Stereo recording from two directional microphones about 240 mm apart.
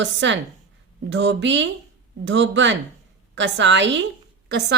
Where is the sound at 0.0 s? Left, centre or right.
Right.